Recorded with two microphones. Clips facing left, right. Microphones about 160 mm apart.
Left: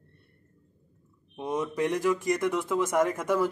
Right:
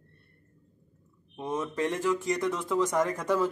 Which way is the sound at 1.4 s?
15° left (ahead or behind).